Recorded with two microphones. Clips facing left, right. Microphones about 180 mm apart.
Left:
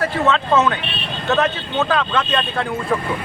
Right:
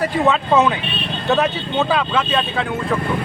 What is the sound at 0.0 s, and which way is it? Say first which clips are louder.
Speech: right 1 dB; 15° right (ahead or behind).